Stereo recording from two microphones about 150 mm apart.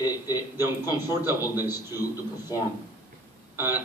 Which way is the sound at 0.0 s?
25° left (ahead or behind).